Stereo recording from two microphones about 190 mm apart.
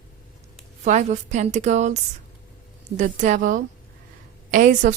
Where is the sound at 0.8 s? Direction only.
40° right (ahead or behind).